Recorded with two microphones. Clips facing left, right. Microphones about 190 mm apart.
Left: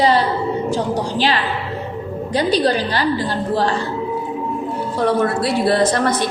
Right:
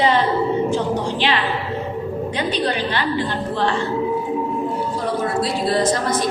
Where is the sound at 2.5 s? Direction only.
35° left (ahead or behind).